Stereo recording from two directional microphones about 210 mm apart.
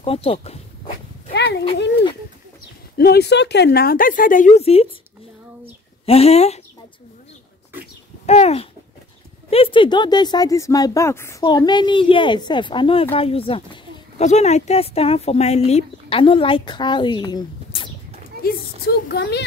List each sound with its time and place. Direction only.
0.0 s speech: 25° left (ahead or behind)
1.3 s a sound: 55° left (ahead or behind)
3.0 s a woman's voice: 50° left (ahead or behind); by 4.8 s 30° left (ahead or behind)
6.0 s speech: 30° left (ahead or behind)
8.3 s speech: 30° left (ahead or behind)
18.4 s a woman's voice: 50° left (ahead or behind)